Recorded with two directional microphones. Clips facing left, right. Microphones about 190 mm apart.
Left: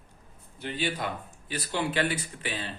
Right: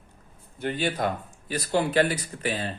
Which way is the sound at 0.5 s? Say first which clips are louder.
Right 4 dB; 50° right (ahead or behind).